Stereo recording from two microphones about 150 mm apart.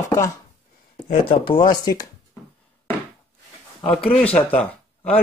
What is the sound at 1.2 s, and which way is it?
Speech, 35° left (ahead or behind).